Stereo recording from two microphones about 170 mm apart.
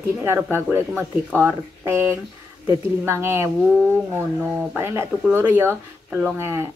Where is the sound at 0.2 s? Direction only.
15° right (ahead or behind).